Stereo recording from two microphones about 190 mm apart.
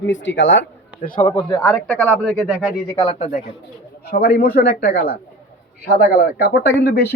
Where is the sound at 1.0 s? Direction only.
45° left (ahead or behind).